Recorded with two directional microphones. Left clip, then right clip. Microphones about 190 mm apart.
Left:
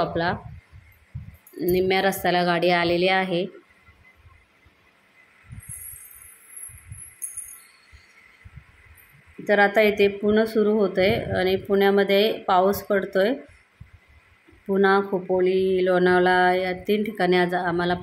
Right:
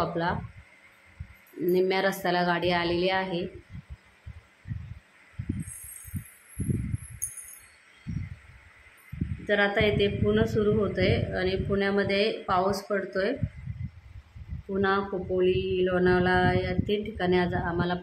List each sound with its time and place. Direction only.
0.0 s speech: 20° left (ahead or behind)
1.7 s a woman's voice: 15° left (ahead or behind)
9.5 s speech: 25° left (ahead or behind)
14.7 s speech: 25° left (ahead or behind)